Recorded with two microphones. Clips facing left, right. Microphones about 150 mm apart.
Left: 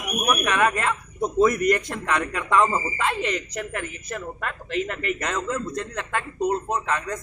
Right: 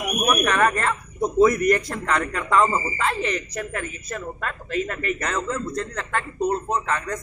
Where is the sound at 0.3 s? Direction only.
10° left (ahead or behind).